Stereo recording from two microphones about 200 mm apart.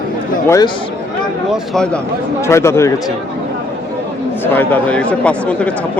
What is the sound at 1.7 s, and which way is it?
Speech, 5° left (ahead or behind).